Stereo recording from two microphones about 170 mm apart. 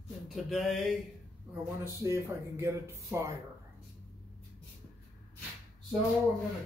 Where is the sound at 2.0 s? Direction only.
15° right (ahead or behind).